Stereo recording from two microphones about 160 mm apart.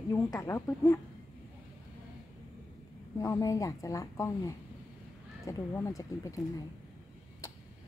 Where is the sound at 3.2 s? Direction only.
20° left (ahead or behind).